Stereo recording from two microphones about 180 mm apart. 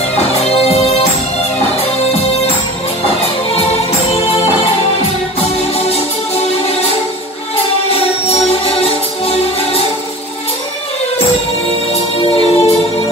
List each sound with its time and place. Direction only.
0.2 s music: 35° left (ahead or behind)
5.8 s music: 35° left (ahead or behind)
7.9 s music: 35° left (ahead or behind)
11.9 s music: 35° left (ahead or behind)